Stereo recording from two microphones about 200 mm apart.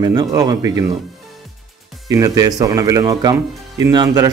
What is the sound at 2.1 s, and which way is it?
Speech, 20° right (ahead or behind).